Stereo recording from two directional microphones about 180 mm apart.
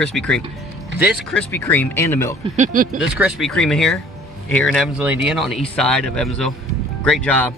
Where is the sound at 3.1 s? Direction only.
Centre (ahead or behind).